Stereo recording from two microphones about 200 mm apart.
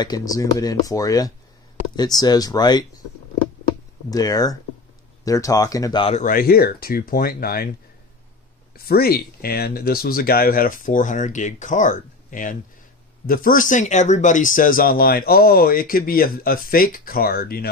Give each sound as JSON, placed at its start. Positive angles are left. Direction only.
{"t": 0.0, "sound": "speech", "side_deg": 20}
{"t": 4.1, "sound": "speech", "side_deg": 20}
{"t": 6.2, "sound": "speech", "side_deg": 45}
{"t": 8.7, "sound": "speech", "side_deg": 50}